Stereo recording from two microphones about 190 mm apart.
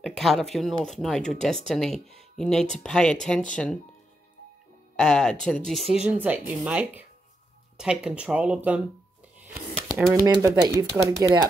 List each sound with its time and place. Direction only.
0.0 s speech: centre (ahead or behind)
4.9 s speech: 5° left (ahead or behind)
9.8 s typewriter: 5° right (ahead or behind)
10.2 s speech: 20° right (ahead or behind)